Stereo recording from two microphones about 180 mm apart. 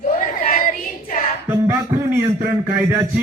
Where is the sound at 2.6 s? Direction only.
15° right (ahead or behind).